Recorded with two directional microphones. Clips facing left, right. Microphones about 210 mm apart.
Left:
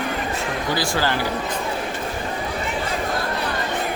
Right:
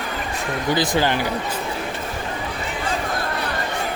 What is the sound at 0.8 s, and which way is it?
Speech, 20° right (ahead or behind).